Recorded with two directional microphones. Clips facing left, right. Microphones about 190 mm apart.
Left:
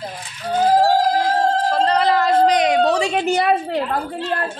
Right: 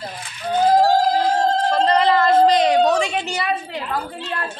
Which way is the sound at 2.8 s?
35° left (ahead or behind).